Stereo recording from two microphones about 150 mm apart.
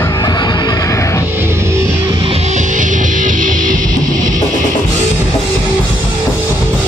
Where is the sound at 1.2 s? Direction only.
15° right (ahead or behind).